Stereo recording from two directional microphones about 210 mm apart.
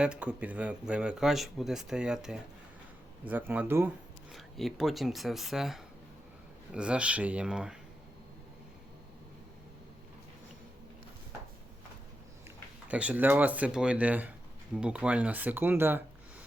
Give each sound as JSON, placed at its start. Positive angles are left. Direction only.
{"t": 0.0, "sound": "speech", "side_deg": -5}
{"t": 12.9, "sound": "speech", "side_deg": -5}